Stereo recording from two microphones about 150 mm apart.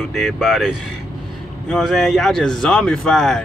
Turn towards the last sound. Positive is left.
turn(degrees=0)  # may be behind; listen again after turning